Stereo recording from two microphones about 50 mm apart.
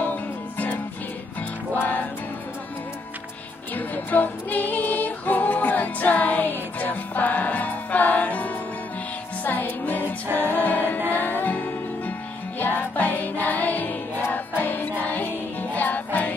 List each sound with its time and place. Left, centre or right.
0.0 s music: left
3.7 s music: left
10.5 s choir: left
11.1 s music: left